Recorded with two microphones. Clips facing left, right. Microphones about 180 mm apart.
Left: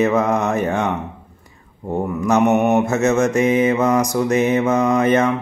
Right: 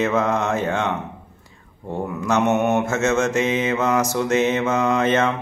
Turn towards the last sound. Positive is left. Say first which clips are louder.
# left 3 dB
turn(degrees=15)  # may be behind; listen again after turning